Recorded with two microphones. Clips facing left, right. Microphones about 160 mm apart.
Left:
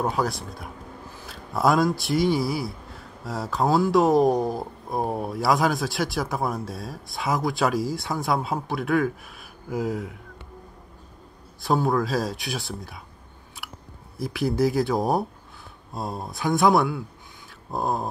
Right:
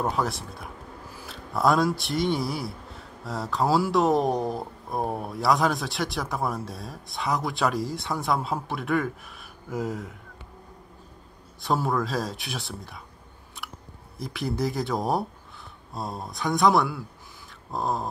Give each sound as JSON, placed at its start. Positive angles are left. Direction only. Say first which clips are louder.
{"t": 0.0, "sound": "speech", "louder": "left 2 dB", "side_deg": 0}
{"t": 1.6, "sound": "speech", "louder": "left 1 dB", "side_deg": 0}
{"t": 11.6, "sound": "speech", "louder": "left 3 dB", "side_deg": 0}
{"t": 13.6, "sound": "chewing", "louder": "right 1 dB", "side_deg": 5}
{"t": 14.1, "sound": "speech", "louder": "left 5 dB", "side_deg": 5}